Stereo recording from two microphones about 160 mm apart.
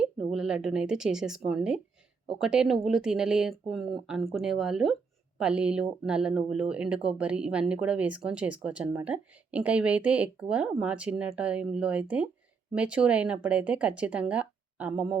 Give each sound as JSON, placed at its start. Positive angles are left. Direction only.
{"t": 0.0, "sound": "speech", "side_deg": -5}